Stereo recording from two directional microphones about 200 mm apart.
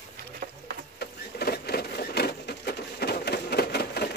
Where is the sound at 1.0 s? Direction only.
55° left (ahead or behind).